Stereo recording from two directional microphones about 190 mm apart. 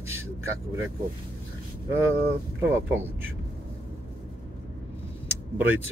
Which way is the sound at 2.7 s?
10° right (ahead or behind).